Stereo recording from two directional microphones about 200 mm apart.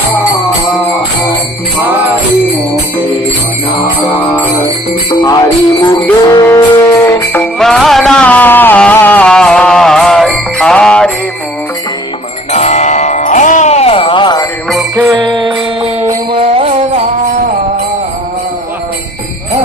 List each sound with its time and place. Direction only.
5.2 s music: 20° left (ahead or behind)
7.6 s music: centre (ahead or behind)
12.5 s music: 35° left (ahead or behind)
14.7 s jingle bell: centre (ahead or behind)
15.2 s music: 25° right (ahead or behind)